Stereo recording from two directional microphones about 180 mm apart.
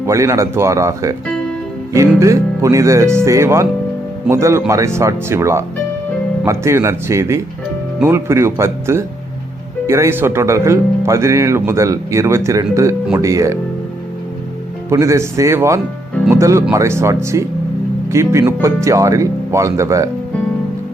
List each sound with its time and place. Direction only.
0.0 s speech: 15° right (ahead or behind)
14.8 s speech: 15° right (ahead or behind)